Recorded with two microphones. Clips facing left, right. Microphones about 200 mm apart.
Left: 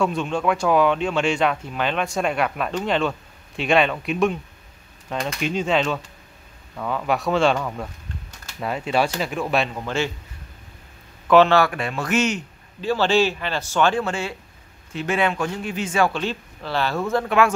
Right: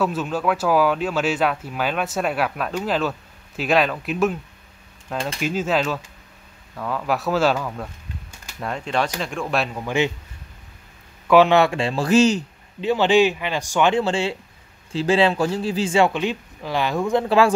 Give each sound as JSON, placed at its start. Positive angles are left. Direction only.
{"t": 0.0, "sound": "speech", "side_deg": -5}
{"t": 5.4, "sound": "speech", "side_deg": -5}
{"t": 9.8, "sound": "speech", "side_deg": -15}
{"t": 11.2, "sound": "speech", "side_deg": -10}
{"t": 11.6, "sound": "speech", "side_deg": -25}
{"t": 12.8, "sound": "a man's voice", "side_deg": -15}